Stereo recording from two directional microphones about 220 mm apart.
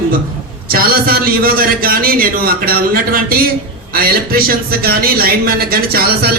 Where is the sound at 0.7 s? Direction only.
40° right (ahead or behind).